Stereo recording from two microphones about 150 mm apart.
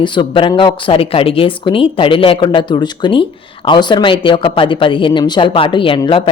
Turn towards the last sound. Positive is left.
turn(degrees=35)  # may be behind; listen again after turning